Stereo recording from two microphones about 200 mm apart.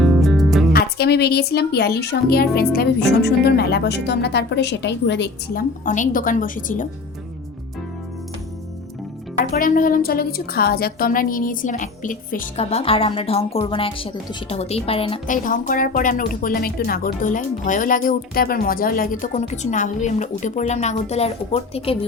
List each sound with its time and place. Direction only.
0.0 s music: centre (ahead or behind)
0.7 s a woman's voice: 50° left (ahead or behind)
5.8 s speech: 40° left (ahead or behind)
9.4 s a woman's voice: 45° left (ahead or behind)
12.5 s a woman's voice: 30° left (ahead or behind)
15.3 s speech: 40° left (ahead or behind)